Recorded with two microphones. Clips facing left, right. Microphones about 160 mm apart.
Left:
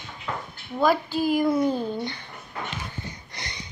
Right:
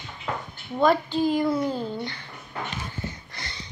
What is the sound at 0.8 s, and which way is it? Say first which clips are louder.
A woman's voice: right 1 dB; 5° left (ahead or behind).